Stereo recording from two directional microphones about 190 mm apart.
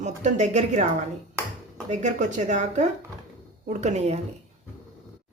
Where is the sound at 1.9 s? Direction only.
40° right (ahead or behind).